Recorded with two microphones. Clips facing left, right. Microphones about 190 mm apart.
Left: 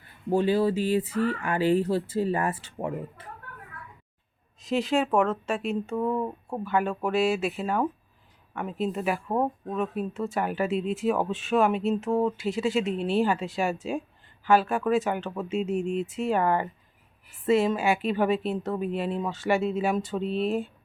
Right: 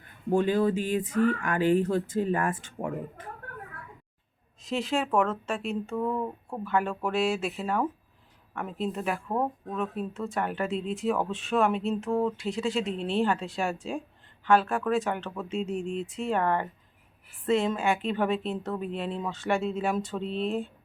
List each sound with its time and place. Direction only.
0.7 s speech: 45° right (ahead or behind)
1.9 s speech: 5° left (ahead or behind)
4.6 s speech: centre (ahead or behind)